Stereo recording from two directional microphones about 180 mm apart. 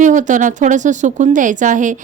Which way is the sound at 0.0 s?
45° right (ahead or behind).